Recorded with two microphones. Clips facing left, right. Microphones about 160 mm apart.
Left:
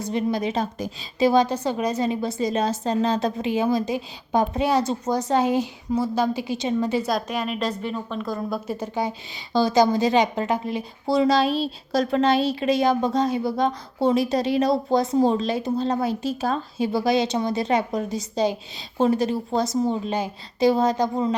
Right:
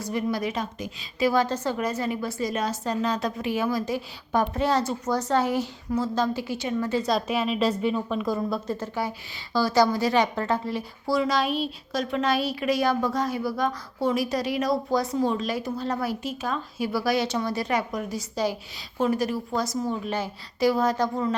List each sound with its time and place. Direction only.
0.0 s a woman's voice: 25° left (ahead or behind)
7.1 s a woman's voice: centre (ahead or behind)
8.4 s a woman's voice: 5° left (ahead or behind)